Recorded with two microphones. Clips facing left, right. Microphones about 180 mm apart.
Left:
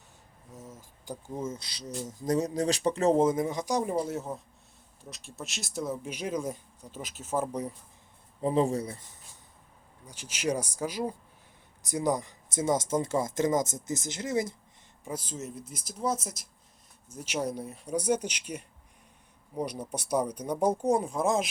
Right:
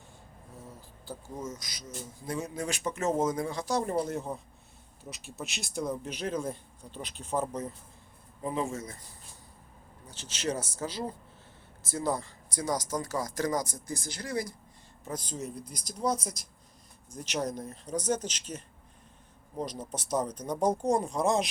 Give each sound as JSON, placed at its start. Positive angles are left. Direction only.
{"t": 0.8, "sound": "a sound", "side_deg": 15}
{"t": 1.4, "sound": "speech", "side_deg": 30}
{"t": 8.4, "sound": "speech", "side_deg": 30}
{"t": 10.1, "sound": "speech", "side_deg": 10}
{"t": 15.0, "sound": "speech", "side_deg": 5}